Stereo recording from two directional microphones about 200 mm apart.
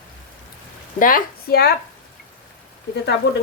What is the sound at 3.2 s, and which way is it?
Speech, 60° left (ahead or behind).